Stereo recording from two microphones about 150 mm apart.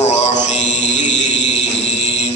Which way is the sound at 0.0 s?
50° left (ahead or behind).